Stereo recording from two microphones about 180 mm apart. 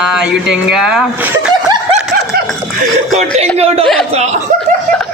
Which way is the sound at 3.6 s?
35° right (ahead or behind).